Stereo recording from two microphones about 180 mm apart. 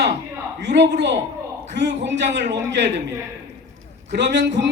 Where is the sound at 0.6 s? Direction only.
75° right (ahead or behind).